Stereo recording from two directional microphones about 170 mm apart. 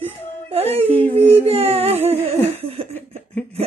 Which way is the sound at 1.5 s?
35° right (ahead or behind).